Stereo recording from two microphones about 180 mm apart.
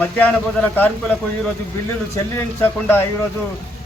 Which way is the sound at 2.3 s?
15° left (ahead or behind).